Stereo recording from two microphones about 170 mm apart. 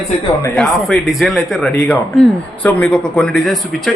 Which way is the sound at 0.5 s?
Centre (ahead or behind).